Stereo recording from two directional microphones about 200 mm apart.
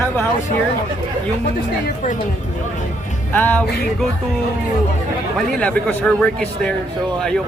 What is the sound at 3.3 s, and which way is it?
Speech, 10° left (ahead or behind).